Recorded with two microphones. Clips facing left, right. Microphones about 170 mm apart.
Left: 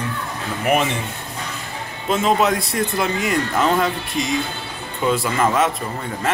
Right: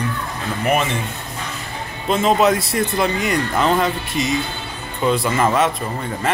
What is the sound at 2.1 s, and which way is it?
Speech, centre (ahead or behind).